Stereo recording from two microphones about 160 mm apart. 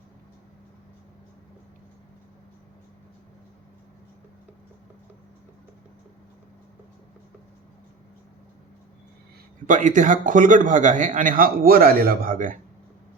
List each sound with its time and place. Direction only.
9.6 s speech: 50° right (ahead or behind)